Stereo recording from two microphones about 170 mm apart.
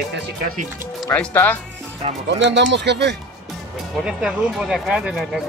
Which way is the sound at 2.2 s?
90° right.